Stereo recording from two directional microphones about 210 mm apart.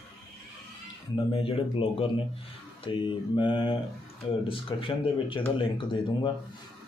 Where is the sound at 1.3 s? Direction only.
25° left (ahead or behind).